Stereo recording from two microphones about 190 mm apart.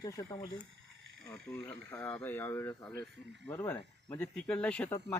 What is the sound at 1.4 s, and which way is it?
Speech, 5° left (ahead or behind).